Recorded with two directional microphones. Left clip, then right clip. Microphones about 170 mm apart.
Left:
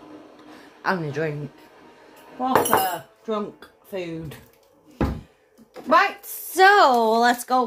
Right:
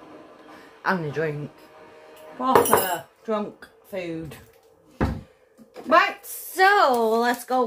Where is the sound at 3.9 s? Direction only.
30° left (ahead or behind).